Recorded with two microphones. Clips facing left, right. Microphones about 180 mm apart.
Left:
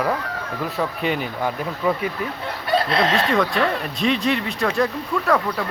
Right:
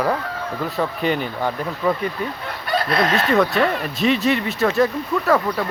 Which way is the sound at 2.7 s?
25° left (ahead or behind).